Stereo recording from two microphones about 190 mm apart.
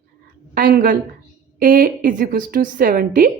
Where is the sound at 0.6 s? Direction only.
45° right (ahead or behind).